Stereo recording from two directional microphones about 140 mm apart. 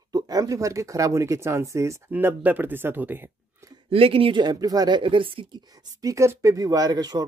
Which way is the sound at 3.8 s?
40° right (ahead or behind).